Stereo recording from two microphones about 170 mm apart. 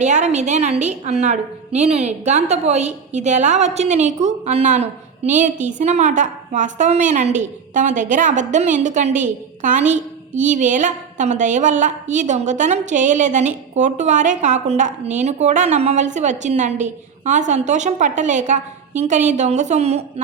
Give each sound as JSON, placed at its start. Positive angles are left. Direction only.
{"t": 0.0, "sound": "a woman's voice", "side_deg": -40}